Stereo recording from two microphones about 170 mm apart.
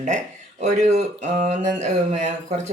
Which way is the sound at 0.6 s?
40° right (ahead or behind).